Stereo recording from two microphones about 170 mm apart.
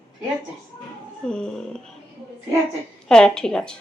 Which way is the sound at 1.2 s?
5° left (ahead or behind).